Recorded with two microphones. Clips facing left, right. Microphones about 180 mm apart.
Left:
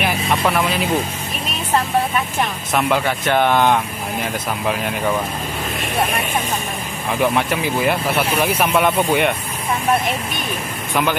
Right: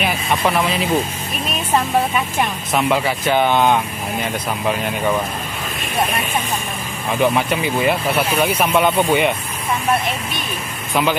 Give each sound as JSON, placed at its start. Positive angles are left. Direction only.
{"t": 0.0, "sound": "vehicle", "side_deg": 0}
{"t": 2.7, "sound": "speech", "side_deg": 0}
{"t": 7.1, "sound": "speech", "side_deg": 0}